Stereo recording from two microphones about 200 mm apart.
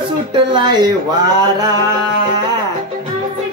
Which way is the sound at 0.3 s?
25° right (ahead or behind).